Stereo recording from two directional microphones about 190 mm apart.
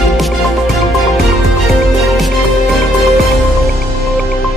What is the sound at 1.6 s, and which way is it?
Music, centre (ahead or behind).